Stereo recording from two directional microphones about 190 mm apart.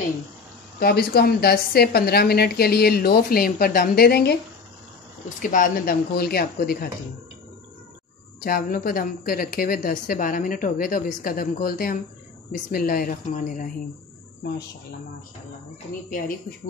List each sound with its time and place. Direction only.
0.7 s a woman's voice: 55° left (ahead or behind)
5.4 s speech: 45° left (ahead or behind)
8.5 s speech: 50° left (ahead or behind)